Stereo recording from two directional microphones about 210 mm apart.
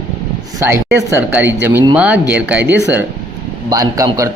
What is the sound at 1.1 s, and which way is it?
Speech, 10° right (ahead or behind).